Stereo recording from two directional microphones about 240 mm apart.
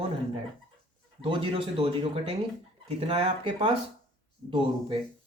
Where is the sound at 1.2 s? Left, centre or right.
Right.